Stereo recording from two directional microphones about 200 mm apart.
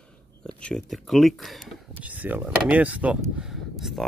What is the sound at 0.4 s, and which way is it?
Speech, 5° left (ahead or behind).